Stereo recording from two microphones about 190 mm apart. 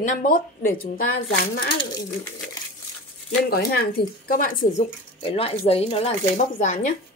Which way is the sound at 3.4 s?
55° left (ahead or behind).